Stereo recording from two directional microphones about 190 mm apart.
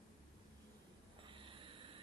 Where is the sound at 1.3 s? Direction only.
25° right (ahead or behind).